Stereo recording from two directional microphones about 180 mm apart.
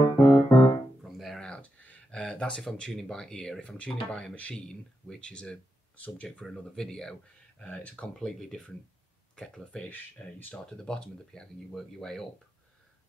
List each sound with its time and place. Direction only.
0.0 s keyboard: 25° left (ahead or behind)
1.0 s a sound: centre (ahead or behind)
4.1 s speech: 5° left (ahead or behind)